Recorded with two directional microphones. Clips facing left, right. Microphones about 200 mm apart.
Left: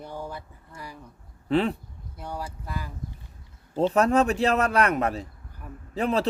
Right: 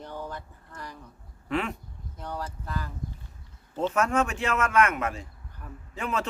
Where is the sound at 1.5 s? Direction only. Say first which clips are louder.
Left 6 dB; 35° left (ahead or behind).